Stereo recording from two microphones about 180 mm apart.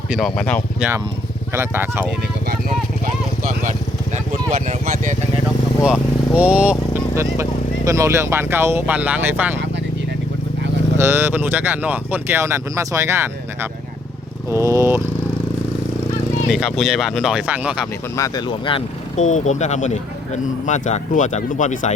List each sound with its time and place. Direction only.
0.1 s speech: centre (ahead or behind)
0.8 s speech: 10° right (ahead or behind)
3.4 s vehicle: 45° right (ahead or behind)
5.8 s speech: 5° right (ahead or behind)
10.9 s speech: 15° right (ahead or behind)
16.5 s speech: centre (ahead or behind)
18.2 s speech: 25° left (ahead or behind)
19.3 s speech: 40° left (ahead or behind)